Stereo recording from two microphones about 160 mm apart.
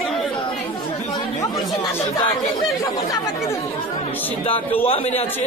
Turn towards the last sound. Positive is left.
turn(degrees=35)  # may be behind; listen again after turning